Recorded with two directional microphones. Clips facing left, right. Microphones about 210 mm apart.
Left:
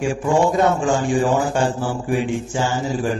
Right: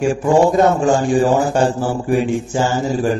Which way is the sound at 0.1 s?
40° right (ahead or behind).